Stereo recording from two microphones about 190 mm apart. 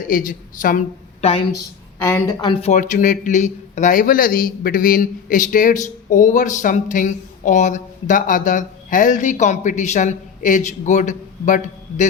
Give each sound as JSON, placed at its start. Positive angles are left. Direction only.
{"t": 0.1, "sound": "a woman's voice", "side_deg": 45}
{"t": 2.0, "sound": "speech", "side_deg": 20}